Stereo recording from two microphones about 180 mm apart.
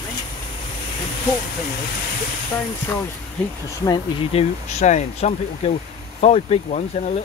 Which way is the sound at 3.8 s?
25° left (ahead or behind).